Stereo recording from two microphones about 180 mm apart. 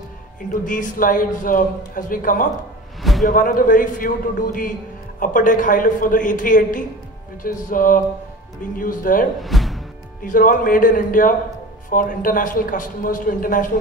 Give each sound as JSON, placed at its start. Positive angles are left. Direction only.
{"t": 0.5, "sound": "a man's voice", "side_deg": 45}
{"t": 3.0, "sound": "a sound", "side_deg": 0}
{"t": 3.3, "sound": "a man's voice", "side_deg": 50}
{"t": 9.4, "sound": "music", "side_deg": 0}
{"t": 10.2, "sound": "a man's voice", "side_deg": 50}